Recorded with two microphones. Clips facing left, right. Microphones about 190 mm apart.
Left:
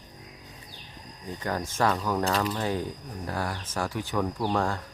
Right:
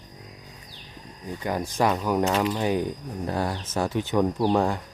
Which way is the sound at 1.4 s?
15° right (ahead or behind).